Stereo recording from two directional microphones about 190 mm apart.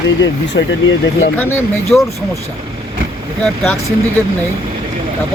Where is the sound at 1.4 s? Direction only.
10° left (ahead or behind).